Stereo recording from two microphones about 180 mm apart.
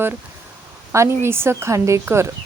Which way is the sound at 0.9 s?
15° right (ahead or behind).